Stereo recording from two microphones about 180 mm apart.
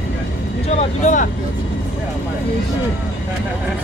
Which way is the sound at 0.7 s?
45° left (ahead or behind).